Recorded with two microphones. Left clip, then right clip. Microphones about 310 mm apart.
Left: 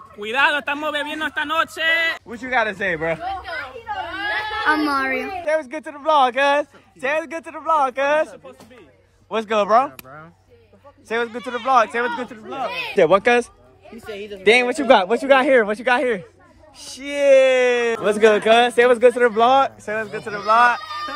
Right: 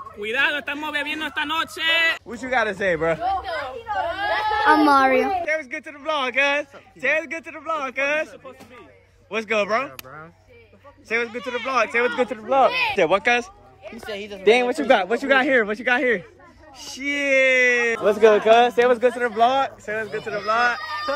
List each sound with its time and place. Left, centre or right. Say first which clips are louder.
0.2 s a man's voice: left 4 dB; centre
3.2 s a sound: right 3 dB; right
4.6 s speech: right 4 dB; centre
5.4 s speech: left 3 dB; centre
9.3 s speech: left 5 dB; centre
11.3 s a man's voice: left 5 dB; centre
12.9 s speech: left 4 dB; centre
14.1 s speech: left 1 dB; centre
14.4 s speech: left 2 dB; left; by 18.0 s centre
18.0 s speech: even; left